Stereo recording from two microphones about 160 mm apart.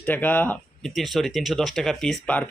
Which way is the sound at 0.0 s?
10° left (ahead or behind).